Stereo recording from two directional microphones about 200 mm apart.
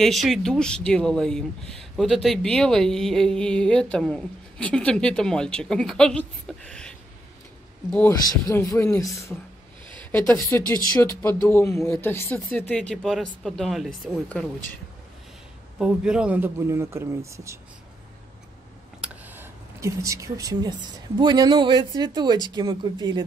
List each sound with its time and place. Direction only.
0.0 s speech: centre (ahead or behind)
8.1 s speech: 15° left (ahead or behind); by 14.5 s centre (ahead or behind)
15.8 s speech: 5° right (ahead or behind)
18.9 s speech: 10° right (ahead or behind)